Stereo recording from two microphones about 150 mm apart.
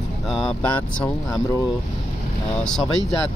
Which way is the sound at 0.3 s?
Centre (ahead or behind).